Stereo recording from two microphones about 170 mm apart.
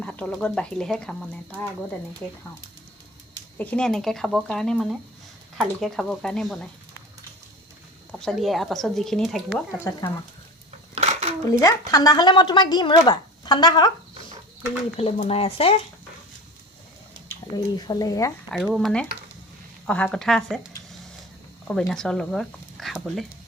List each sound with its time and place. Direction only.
0.0 s speech: 5° left (ahead or behind)
3.6 s speech: 5° left (ahead or behind)
8.2 s speech: centre (ahead or behind)
9.9 s speech: 15° left (ahead or behind)
10.9 s dishes: 40° right (ahead or behind)
11.4 s speech: 20° left (ahead or behind)
14.9 s speech: 35° left (ahead or behind)
17.7 s speech: 20° left (ahead or behind)
18.5 s speech: centre (ahead or behind)
21.7 s speech: 5° left (ahead or behind)